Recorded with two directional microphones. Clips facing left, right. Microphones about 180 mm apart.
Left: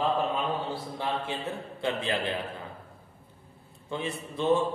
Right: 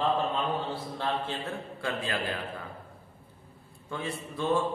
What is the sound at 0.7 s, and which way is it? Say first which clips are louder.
A man's voice: even; 15° left (ahead or behind).